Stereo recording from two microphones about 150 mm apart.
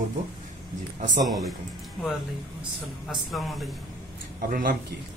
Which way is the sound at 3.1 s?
Centre (ahead or behind).